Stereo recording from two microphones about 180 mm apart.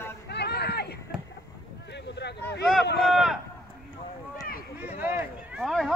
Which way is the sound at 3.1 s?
Centre (ahead or behind).